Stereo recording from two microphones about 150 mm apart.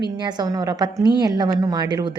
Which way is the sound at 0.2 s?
30° right (ahead or behind).